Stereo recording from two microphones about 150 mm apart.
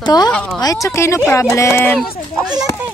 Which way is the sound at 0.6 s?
20° left (ahead or behind).